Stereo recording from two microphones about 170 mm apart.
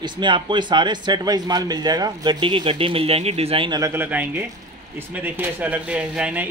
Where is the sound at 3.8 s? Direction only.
10° right (ahead or behind).